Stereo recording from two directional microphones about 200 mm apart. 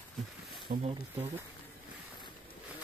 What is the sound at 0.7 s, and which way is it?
Speech, 35° right (ahead or behind).